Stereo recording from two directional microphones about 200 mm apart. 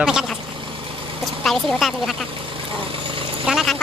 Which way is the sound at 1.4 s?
Centre (ahead or behind).